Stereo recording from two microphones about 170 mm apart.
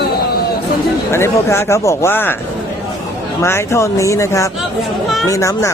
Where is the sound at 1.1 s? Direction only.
15° left (ahead or behind).